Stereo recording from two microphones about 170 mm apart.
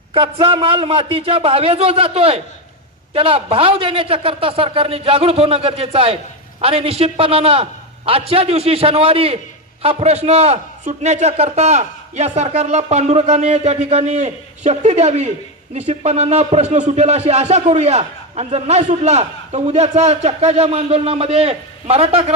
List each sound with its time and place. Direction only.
0.1 s speech: 30° right (ahead or behind)